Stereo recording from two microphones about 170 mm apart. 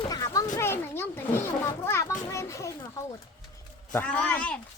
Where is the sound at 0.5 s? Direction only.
15° left (ahead or behind).